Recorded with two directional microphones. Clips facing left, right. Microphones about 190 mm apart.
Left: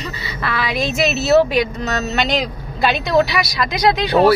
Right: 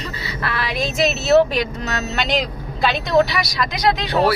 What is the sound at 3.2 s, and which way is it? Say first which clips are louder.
Speech: left 1 dB; 10° left (ahead or behind).